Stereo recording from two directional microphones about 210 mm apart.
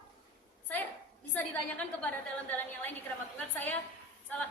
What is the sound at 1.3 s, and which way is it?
A woman's voice, 5° left (ahead or behind).